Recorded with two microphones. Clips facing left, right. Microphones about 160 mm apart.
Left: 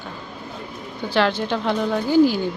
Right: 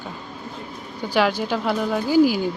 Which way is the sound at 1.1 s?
10° right (ahead or behind).